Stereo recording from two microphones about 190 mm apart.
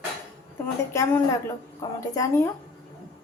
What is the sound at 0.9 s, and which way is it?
A woman's voice, 15° left (ahead or behind).